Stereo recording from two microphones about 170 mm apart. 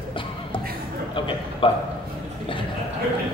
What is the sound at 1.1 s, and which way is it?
Speech, 30° left (ahead or behind).